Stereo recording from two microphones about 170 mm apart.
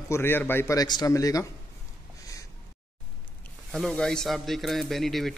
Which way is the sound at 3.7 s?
Centre (ahead or behind).